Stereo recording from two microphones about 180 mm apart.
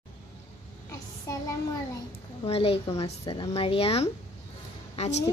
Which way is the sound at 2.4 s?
30° left (ahead or behind).